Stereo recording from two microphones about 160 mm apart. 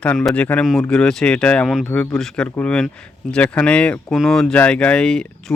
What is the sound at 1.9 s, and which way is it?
Speech, 15° left (ahead or behind).